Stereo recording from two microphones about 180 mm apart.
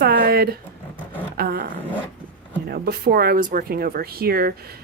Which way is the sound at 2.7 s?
60° right (ahead or behind).